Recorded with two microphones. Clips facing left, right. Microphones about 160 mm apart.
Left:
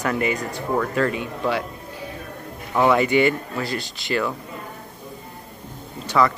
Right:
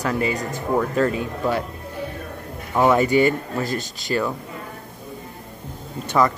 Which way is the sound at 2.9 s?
40° right (ahead or behind).